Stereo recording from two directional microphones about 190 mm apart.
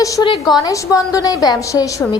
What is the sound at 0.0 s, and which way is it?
A woman's voice, 20° left (ahead or behind).